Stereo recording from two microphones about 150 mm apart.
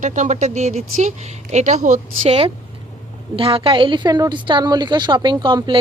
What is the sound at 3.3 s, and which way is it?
A woman's voice, 35° right (ahead or behind).